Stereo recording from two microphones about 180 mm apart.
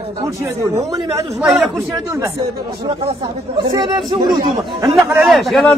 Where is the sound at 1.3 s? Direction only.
5° right (ahead or behind).